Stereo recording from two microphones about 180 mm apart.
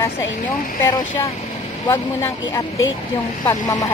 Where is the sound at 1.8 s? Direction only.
15° left (ahead or behind).